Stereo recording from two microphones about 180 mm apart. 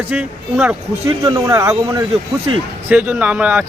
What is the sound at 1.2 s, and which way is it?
Speech, 20° right (ahead or behind).